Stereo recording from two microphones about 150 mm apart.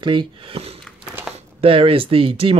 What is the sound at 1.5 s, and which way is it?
Speech, 40° right (ahead or behind).